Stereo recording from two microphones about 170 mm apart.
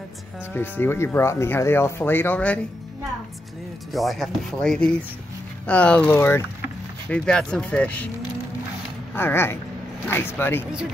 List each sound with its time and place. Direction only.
0.6 s speech: 15° left (ahead or behind)
3.9 s speech: centre (ahead or behind)
9.1 s speech: 15° left (ahead or behind)